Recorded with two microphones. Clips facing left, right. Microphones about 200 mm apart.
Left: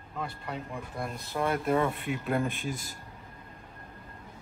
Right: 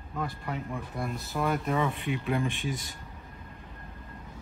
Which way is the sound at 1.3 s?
Centre (ahead or behind).